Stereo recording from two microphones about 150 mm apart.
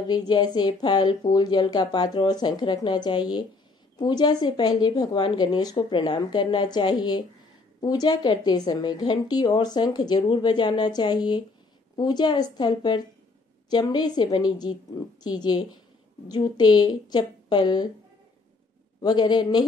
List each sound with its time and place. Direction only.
0.1 s a woman's voice: 25° left (ahead or behind)
18.9 s a woman's voice: 30° left (ahead or behind)